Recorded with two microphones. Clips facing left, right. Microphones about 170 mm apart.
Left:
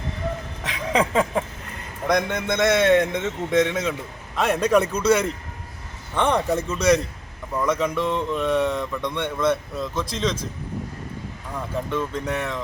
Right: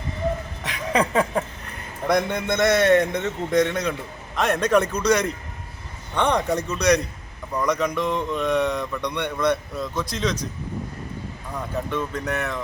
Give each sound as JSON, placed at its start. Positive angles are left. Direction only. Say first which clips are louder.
{"t": 0.6, "sound": "a sound", "louder": "left 1 dB", "side_deg": 0}
{"t": 2.0, "sound": "a man's voice", "louder": "even", "side_deg": 0}
{"t": 11.5, "sound": "speech", "louder": "left 1 dB", "side_deg": 0}